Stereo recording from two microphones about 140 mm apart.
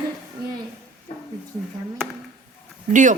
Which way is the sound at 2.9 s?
60° right (ahead or behind).